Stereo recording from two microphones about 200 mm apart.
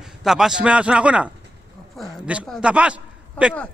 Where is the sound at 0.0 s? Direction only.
Centre (ahead or behind).